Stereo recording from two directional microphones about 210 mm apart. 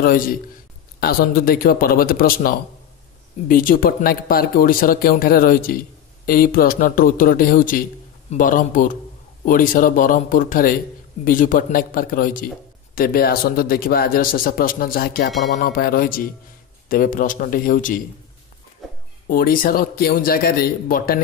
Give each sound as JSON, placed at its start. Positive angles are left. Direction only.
{"t": 0.0, "sound": "a man's voice", "side_deg": 40}
{"t": 19.2, "sound": "speech", "side_deg": 40}